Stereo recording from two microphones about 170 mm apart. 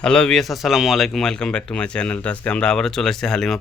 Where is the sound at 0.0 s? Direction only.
5° left (ahead or behind).